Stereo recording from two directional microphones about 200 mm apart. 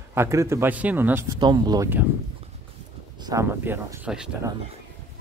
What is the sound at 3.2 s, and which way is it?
A man's voice, 15° right (ahead or behind).